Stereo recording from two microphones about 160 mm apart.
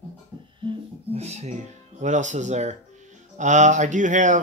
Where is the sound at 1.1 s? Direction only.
40° right (ahead or behind).